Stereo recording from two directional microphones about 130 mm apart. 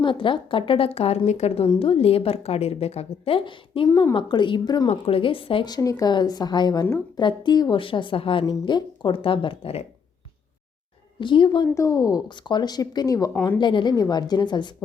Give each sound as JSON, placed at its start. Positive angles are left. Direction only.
{"t": 0.0, "sound": "a woman's voice", "side_deg": 40}
{"t": 3.8, "sound": "a woman's voice", "side_deg": 30}
{"t": 4.9, "sound": "a woman's voice", "side_deg": 45}
{"t": 11.2, "sound": "a woman's voice", "side_deg": 40}
{"t": 11.7, "sound": "a woman's voice", "side_deg": 25}